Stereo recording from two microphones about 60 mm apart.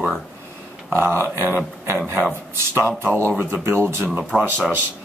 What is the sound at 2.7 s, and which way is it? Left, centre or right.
Speech, right.